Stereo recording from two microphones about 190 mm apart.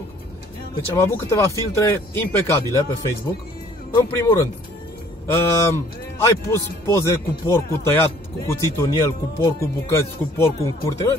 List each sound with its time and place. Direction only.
0.9 s speech: 15° left (ahead or behind)